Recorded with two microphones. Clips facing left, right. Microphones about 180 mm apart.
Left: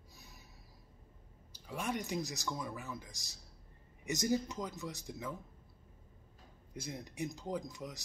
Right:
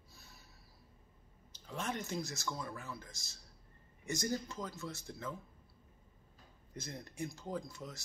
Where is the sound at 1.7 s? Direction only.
15° left (ahead or behind).